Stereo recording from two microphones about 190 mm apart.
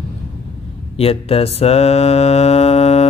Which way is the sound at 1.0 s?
30° left (ahead or behind).